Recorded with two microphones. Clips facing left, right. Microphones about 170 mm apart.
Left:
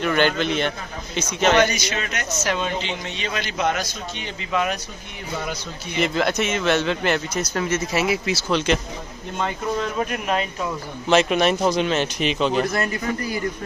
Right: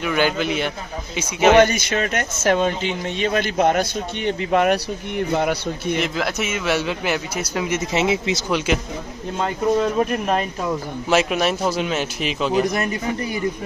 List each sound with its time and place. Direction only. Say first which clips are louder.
0.0 s a man's voice: even; 10° right (ahead or behind)
1.6 s speech: right 4 dB; 55° right (ahead or behind)
5.9 s a man's voice: left 2 dB; centre (ahead or behind)
11.1 s a man's voice: left 1 dB; 5° right (ahead or behind)
12.6 s a man's voice: right 2 dB; 20° right (ahead or behind)